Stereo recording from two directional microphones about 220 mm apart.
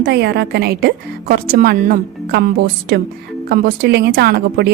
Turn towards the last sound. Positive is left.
turn(degrees=-45)  # may be behind; listen again after turning